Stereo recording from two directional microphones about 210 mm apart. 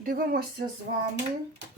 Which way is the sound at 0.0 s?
45° right (ahead or behind).